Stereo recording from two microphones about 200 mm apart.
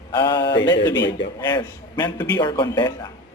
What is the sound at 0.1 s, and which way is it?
Speech, 15° left (ahead or behind).